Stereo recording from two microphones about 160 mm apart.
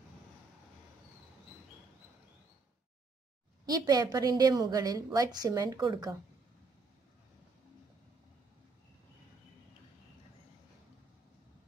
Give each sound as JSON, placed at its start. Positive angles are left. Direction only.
{"t": 3.6, "sound": "a woman's voice", "side_deg": -25}